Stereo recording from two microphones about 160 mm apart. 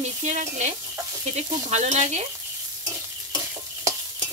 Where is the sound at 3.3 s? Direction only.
20° right (ahead or behind).